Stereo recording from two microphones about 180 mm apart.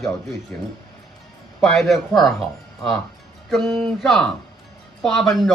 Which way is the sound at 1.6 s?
Centre (ahead or behind).